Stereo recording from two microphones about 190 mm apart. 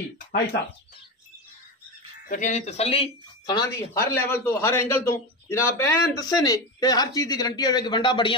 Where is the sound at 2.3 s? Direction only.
40° left (ahead or behind).